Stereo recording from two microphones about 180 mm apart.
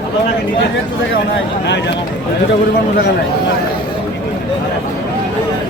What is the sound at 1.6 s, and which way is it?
Speech, 75° left (ahead or behind).